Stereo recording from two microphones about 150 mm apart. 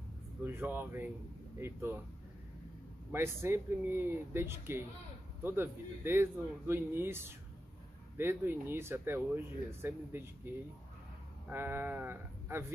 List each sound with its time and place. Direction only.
0.4 s speech: 15° right (ahead or behind)
3.1 s speech: 15° right (ahead or behind)